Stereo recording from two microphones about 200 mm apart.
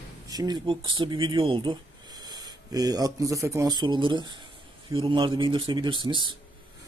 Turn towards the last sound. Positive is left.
turn(degrees=-25)  # may be behind; listen again after turning